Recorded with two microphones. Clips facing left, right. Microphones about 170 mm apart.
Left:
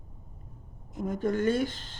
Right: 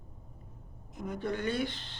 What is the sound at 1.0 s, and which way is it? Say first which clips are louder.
Speech: left 7 dB; 45° left (ahead or behind).